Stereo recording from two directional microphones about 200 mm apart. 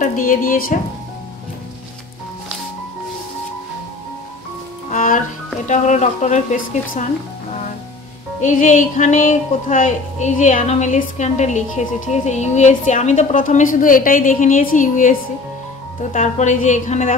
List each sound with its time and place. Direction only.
0.3 s a woman's voice: 45° left (ahead or behind)
4.9 s music: 40° left (ahead or behind)
5.7 s speech: 35° left (ahead or behind)
8.4 s speech: 40° left (ahead or behind)